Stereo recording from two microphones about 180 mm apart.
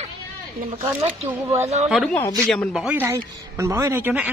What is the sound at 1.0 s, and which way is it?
Speech, 35° right (ahead or behind).